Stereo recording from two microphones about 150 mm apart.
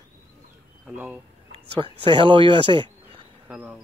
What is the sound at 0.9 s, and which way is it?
Speech, 15° right (ahead or behind).